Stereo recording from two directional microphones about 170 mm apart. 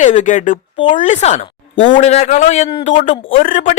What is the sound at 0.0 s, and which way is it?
A woman's voice, 45° left (ahead or behind).